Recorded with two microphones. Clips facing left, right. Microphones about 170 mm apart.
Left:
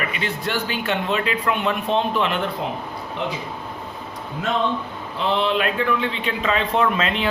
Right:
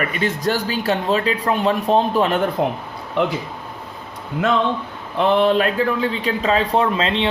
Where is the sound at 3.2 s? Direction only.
65° right (ahead or behind).